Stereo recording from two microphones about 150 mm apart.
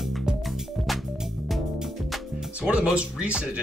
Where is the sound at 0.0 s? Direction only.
5° right (ahead or behind).